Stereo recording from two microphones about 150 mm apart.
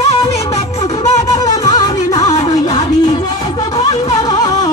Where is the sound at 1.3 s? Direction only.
25° left (ahead or behind).